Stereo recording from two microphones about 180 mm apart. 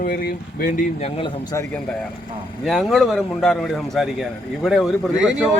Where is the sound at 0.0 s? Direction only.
55° left (ahead or behind).